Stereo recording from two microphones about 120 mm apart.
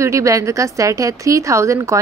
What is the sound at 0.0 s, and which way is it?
Speech, 25° right (ahead or behind).